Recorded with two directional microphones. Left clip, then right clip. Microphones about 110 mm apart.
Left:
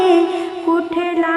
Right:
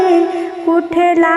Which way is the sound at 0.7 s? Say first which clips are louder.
Right 9 dB; 40° right (ahead or behind).